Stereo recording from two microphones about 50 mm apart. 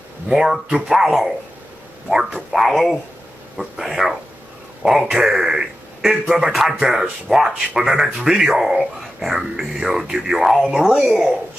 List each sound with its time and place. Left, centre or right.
0.4 s a man's voice: centre
2.5 s a man's voice: centre
7.9 s speech: right
8.3 s a man's voice: centre